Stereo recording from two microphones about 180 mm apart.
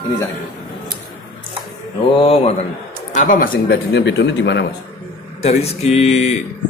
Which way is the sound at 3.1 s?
45° left (ahead or behind).